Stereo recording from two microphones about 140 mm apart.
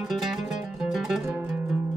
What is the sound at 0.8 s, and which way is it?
Zither, centre (ahead or behind).